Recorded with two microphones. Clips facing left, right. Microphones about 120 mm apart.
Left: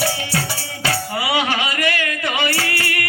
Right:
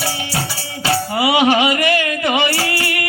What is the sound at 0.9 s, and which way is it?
Music, 20° right (ahead or behind).